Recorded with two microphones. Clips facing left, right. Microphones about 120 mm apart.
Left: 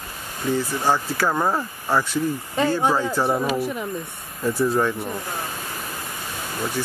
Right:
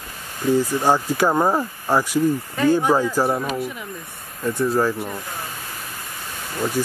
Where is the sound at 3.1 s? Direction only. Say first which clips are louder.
Right 1 dB; 5° right (ahead or behind).